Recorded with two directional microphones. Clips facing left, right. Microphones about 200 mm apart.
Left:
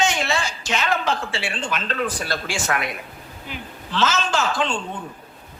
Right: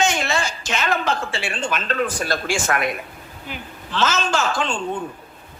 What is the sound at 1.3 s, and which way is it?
A man's voice, 45° right (ahead or behind).